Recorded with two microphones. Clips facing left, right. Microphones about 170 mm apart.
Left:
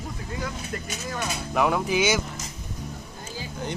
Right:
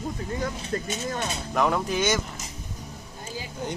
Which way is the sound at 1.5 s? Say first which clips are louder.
Left 1 dB; 5° left (ahead or behind).